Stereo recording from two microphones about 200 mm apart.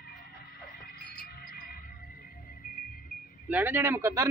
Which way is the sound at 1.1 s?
45° left (ahead or behind).